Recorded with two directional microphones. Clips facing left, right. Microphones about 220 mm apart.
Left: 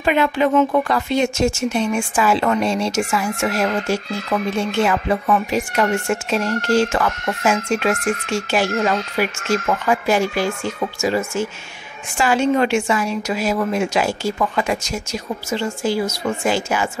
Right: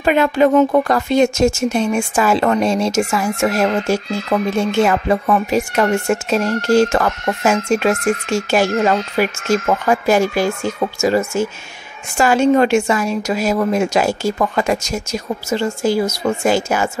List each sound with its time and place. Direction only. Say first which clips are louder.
0.0 s speech: right 4 dB; 45° right (ahead or behind)